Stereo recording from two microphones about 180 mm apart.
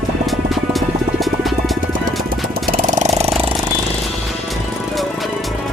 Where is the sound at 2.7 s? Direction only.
45° right (ahead or behind).